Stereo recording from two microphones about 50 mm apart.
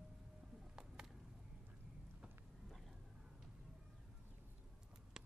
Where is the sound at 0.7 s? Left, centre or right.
Centre.